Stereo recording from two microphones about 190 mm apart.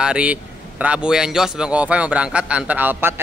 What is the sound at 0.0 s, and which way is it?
A man's voice, 5° right (ahead or behind).